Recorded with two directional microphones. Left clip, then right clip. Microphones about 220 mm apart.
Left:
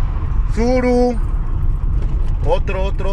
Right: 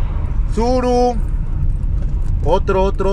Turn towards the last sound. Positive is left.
turn(degrees=-15)  # may be behind; listen again after turning